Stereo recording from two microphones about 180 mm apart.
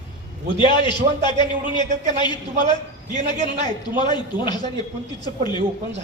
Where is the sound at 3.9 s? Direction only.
25° left (ahead or behind).